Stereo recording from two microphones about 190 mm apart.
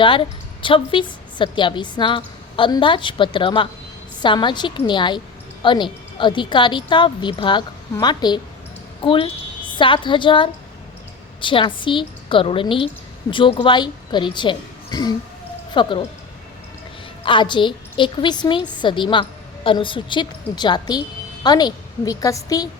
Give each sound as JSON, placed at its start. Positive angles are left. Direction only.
{"t": 0.0, "sound": "a woman's voice", "side_deg": 25}
{"t": 17.2, "sound": "a woman's voice", "side_deg": 25}